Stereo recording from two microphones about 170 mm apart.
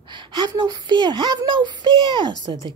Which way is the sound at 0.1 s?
25° right (ahead or behind).